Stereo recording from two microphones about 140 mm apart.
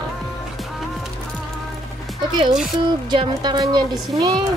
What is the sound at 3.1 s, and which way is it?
A woman's voice, 30° right (ahead or behind).